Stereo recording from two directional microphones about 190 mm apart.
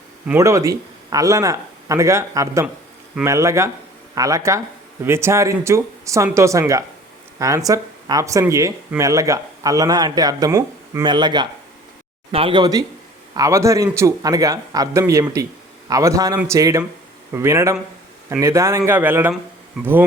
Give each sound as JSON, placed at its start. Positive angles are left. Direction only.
{"t": 0.3, "sound": "speech", "side_deg": -15}